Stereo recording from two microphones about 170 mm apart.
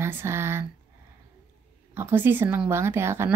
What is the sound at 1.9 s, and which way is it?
Speech, 15° right (ahead or behind).